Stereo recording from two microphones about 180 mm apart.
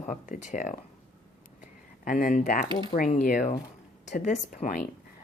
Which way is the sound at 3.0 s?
45° left (ahead or behind).